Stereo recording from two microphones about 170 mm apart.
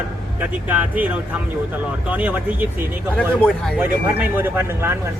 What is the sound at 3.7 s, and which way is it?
Speech, 10° right (ahead or behind).